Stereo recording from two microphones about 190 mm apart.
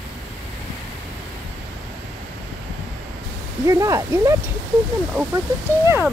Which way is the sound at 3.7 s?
15° right (ahead or behind).